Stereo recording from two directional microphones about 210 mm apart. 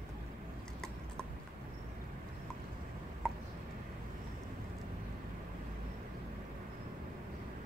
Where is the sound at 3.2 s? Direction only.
5° left (ahead or behind).